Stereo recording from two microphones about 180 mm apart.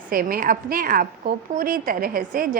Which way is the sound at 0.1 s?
50° right (ahead or behind).